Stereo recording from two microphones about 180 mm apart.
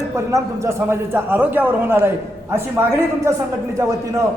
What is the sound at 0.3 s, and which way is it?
A man's voice, 15° right (ahead or behind).